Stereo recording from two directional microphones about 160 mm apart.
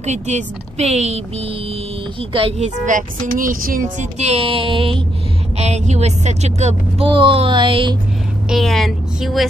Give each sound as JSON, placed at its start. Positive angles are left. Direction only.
{"t": 0.0, "sound": "speech", "side_deg": -45}
{"t": 2.3, "sound": "a woman's voice", "side_deg": -35}
{"t": 2.8, "sound": "a woman's voice", "side_deg": -55}
{"t": 8.5, "sound": "a woman's voice", "side_deg": 0}